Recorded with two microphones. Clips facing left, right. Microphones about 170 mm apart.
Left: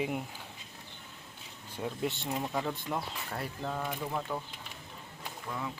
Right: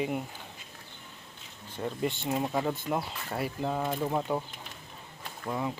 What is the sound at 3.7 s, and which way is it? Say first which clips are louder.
Speech: right 5 dB; 20° right (ahead or behind).